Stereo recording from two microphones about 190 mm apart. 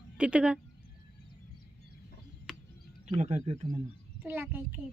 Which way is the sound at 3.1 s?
35° right (ahead or behind).